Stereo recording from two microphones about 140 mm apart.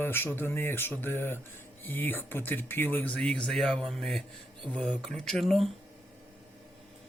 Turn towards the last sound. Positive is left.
turn(degrees=0)  # may be behind; listen again after turning